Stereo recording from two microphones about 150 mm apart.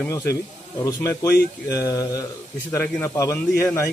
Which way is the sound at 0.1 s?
20° left (ahead or behind).